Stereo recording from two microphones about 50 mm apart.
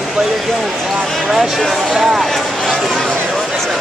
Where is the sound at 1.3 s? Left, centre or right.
Centre.